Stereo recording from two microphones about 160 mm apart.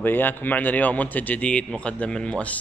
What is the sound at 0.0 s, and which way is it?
A man's voice, 10° left (ahead or behind).